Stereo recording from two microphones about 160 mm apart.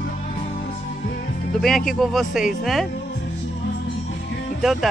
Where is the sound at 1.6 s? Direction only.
Centre (ahead or behind).